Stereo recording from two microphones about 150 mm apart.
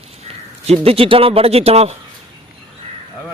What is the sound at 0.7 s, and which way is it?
A man's voice, 40° right (ahead or behind).